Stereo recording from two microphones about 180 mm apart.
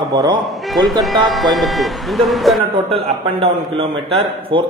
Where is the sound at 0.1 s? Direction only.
20° right (ahead or behind).